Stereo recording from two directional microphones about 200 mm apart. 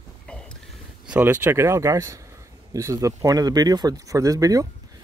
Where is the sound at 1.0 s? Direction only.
10° right (ahead or behind).